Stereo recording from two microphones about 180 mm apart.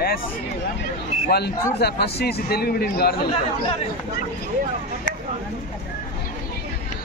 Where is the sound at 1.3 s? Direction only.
65° left (ahead or behind).